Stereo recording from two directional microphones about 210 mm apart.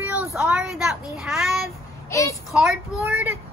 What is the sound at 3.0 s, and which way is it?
Speech, 15° right (ahead or behind).